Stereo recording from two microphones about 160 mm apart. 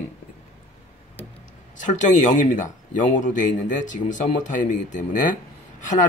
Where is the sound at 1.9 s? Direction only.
50° left (ahead or behind).